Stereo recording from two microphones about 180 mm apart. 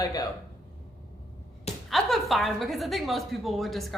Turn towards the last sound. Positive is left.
turn(degrees=0)  # may be behind; listen again after turning